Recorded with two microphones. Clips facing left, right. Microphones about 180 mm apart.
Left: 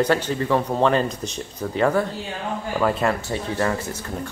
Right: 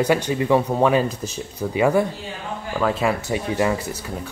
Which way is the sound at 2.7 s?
Centre (ahead or behind).